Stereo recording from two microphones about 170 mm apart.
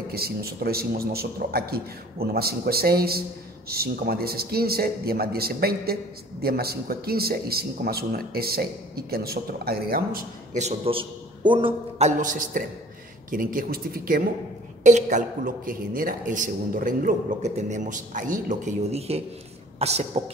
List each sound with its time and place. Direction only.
0.1 s a man's voice: 65° right (ahead or behind)
10.5 s a man's voice: 35° right (ahead or behind)
12.0 s a man's voice: 50° right (ahead or behind)
14.8 s speech: 45° right (ahead or behind)